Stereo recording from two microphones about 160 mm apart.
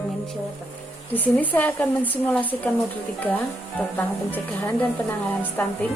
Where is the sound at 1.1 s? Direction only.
10° left (ahead or behind).